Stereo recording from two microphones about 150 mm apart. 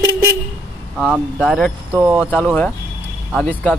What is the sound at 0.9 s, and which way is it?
Speech, centre (ahead or behind).